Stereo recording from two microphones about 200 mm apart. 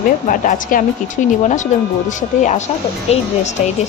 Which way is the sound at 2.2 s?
40° left (ahead or behind).